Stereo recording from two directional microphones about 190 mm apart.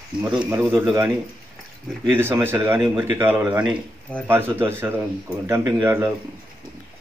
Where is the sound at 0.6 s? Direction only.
10° right (ahead or behind).